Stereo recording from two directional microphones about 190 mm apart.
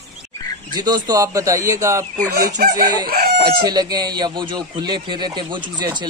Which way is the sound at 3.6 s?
20° right (ahead or behind).